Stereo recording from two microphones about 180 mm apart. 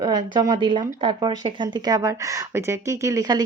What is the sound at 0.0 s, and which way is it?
Speech, 25° right (ahead or behind).